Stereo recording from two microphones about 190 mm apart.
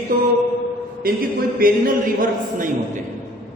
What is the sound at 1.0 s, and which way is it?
A man's voice, 50° right (ahead or behind).